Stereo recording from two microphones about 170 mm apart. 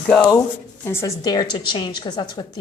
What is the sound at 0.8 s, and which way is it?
A woman's voice, 20° left (ahead or behind).